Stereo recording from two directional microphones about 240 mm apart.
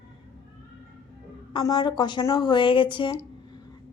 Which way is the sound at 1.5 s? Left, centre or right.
Centre.